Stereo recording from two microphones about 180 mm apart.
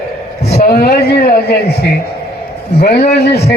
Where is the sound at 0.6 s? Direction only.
55° left (ahead or behind).